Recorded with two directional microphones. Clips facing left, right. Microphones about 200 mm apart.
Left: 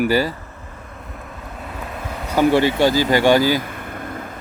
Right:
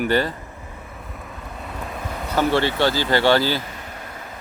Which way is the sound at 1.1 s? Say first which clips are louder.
Left 2 dB; centre (ahead or behind).